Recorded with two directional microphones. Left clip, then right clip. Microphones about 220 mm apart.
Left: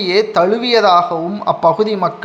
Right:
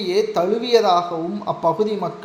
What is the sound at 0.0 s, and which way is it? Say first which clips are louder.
A man's voice: left 6 dB; 15° left (ahead or behind).